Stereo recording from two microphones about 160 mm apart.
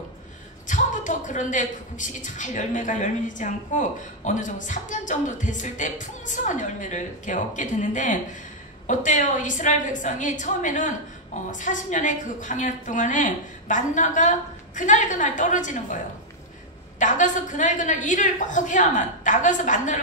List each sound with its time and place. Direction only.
0.7 s a woman's voice: 50° left (ahead or behind)
17.0 s a woman's voice: 50° left (ahead or behind)